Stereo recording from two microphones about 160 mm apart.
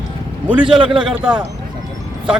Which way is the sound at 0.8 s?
30° right (ahead or behind).